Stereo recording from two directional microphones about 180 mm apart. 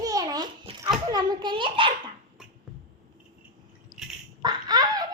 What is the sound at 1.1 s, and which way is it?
Speech, 25° right (ahead or behind).